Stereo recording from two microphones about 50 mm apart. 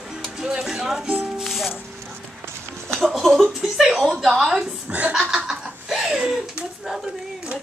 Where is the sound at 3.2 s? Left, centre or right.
Centre.